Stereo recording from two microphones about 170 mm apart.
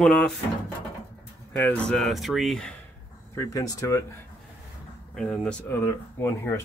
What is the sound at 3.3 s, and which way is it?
Speech, 20° left (ahead or behind).